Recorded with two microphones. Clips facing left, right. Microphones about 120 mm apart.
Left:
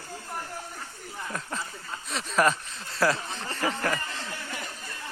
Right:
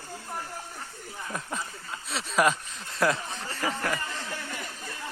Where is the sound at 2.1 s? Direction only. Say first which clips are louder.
Even; 5° right (ahead or behind).